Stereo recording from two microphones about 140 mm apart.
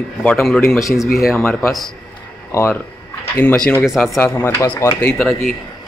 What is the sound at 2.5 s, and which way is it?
Speech, 20° left (ahead or behind).